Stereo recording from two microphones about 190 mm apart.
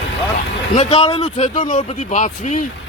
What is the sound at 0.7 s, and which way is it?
Speech, 35° left (ahead or behind).